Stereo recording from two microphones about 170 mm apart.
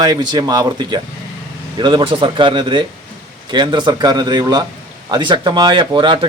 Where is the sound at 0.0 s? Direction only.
25° right (ahead or behind).